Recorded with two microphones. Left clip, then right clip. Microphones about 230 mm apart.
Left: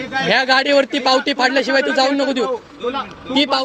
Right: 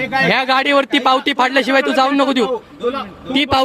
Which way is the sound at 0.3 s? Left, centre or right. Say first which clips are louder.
Left 3 dB; right.